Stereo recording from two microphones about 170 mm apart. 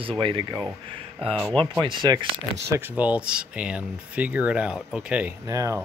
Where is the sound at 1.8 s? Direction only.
25° right (ahead or behind).